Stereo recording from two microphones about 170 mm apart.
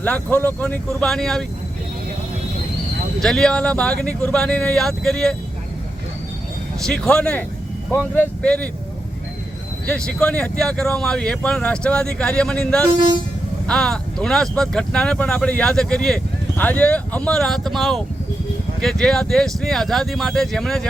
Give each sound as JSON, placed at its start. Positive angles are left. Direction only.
{"t": 0.0, "sound": "speech", "side_deg": 10}
{"t": 3.2, "sound": "speech", "side_deg": 5}
{"t": 6.8, "sound": "speech", "side_deg": 5}
{"t": 9.8, "sound": "speech", "side_deg": 5}
{"t": 12.9, "sound": "speech", "side_deg": -25}
{"t": 13.7, "sound": "speech", "side_deg": 5}